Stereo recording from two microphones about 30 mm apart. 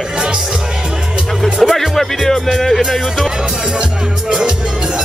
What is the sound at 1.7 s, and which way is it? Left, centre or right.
Speech, centre.